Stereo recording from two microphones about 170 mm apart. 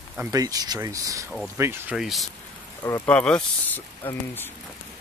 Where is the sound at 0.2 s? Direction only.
20° right (ahead or behind).